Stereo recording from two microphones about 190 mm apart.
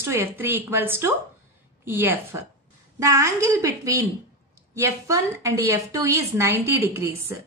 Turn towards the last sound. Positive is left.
turn(degrees=-15)  # may be behind; listen again after turning